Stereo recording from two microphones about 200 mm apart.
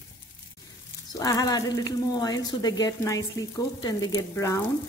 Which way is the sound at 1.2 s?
20° left (ahead or behind).